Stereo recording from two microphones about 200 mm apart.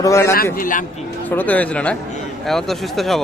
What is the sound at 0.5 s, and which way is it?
Speech, 40° left (ahead or behind).